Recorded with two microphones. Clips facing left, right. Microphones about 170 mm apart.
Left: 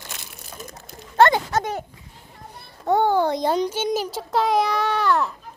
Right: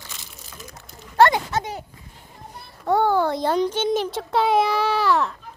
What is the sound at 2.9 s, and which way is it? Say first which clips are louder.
Speech: even; 20° left (ahead or behind).